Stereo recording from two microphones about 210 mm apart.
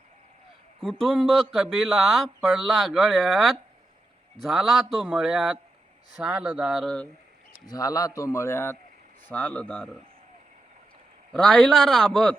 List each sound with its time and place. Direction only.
0.8 s speech: centre (ahead or behind)
7.6 s speech: 20° left (ahead or behind)
11.3 s speech: 5° left (ahead or behind)